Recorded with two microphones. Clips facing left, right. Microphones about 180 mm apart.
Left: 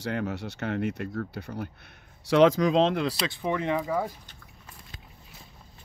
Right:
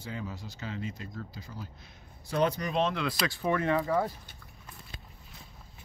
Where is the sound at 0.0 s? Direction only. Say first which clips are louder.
Left 9 dB; 70° left (ahead or behind).